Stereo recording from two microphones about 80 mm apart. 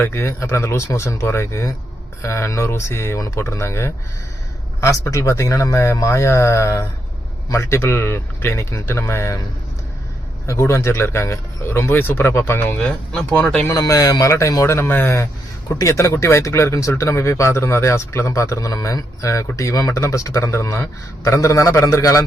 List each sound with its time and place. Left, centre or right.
0.0 s a man's voice: left
10.4 s a man's voice: left
12.8 s speech: centre
13.7 s a man's voice: left